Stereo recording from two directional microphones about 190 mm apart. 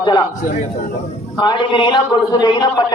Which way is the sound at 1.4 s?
25° left (ahead or behind).